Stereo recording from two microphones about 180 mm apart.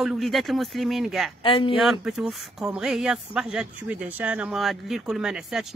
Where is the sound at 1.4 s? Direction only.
30° left (ahead or behind).